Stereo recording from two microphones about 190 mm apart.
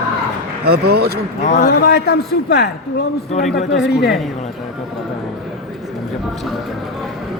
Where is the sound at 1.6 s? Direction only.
55° left (ahead or behind).